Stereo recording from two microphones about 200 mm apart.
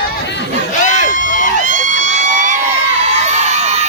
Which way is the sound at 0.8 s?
40° left (ahead or behind).